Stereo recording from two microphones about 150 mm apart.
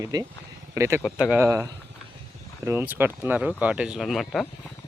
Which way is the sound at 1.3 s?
15° right (ahead or behind).